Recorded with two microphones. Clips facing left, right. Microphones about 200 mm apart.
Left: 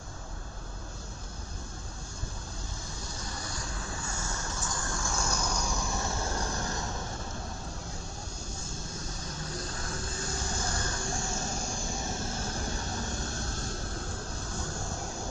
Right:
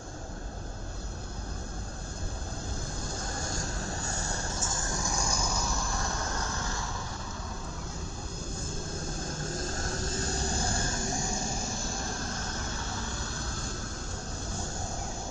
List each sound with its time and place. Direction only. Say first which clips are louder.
3.2 s vehicle: right 3 dB; 50° right (ahead or behind); by 5.9 s centre (ahead or behind)
9.6 s vehicle: right 4 dB; 45° right (ahead or behind); by 11.1 s 25° right (ahead or behind)